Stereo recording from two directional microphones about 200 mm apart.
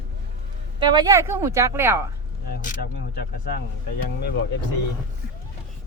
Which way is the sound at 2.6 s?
40° left (ahead or behind).